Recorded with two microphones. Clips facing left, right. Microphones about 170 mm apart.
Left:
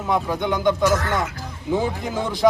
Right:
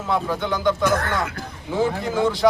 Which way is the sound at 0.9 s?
55° right (ahead or behind).